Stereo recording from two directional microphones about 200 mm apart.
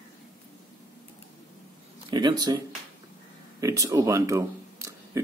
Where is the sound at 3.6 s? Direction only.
15° right (ahead or behind).